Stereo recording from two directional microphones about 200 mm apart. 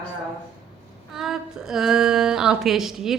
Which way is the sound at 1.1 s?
Centre (ahead or behind).